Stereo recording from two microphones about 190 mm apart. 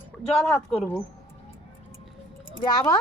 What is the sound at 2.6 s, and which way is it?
Speech, 20° left (ahead or behind).